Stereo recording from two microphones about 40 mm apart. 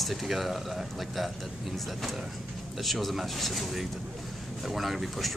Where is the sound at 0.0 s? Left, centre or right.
Centre.